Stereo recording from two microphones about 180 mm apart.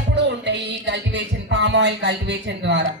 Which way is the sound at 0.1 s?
70° right (ahead or behind).